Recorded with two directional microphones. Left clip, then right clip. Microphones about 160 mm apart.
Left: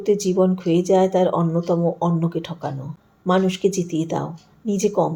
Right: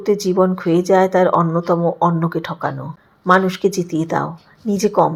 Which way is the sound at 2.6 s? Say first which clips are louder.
Right 6 dB; 5° right (ahead or behind).